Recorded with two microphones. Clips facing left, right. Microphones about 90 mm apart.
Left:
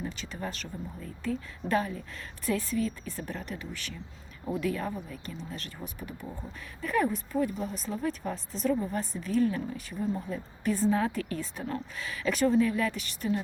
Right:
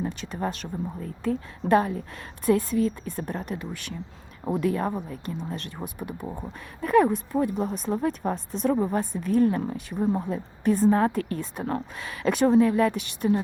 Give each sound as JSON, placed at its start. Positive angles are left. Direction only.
{"t": 0.0, "sound": "speech", "side_deg": -40}